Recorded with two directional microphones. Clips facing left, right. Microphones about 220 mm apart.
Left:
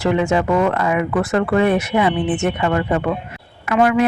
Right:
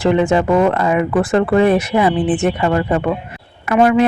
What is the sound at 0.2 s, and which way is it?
Speech, 30° right (ahead or behind).